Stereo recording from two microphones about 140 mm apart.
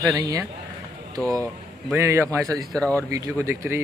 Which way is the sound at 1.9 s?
20° right (ahead or behind).